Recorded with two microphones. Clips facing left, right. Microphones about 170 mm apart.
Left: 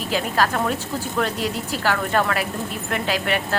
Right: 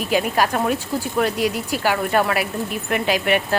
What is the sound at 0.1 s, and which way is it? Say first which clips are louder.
Speech: right 2 dB; 15° right (ahead or behind).